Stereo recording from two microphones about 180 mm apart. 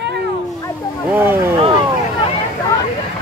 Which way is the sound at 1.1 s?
10° right (ahead or behind).